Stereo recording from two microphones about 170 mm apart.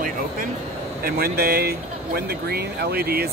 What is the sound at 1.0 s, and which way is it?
Speech, 65° right (ahead or behind).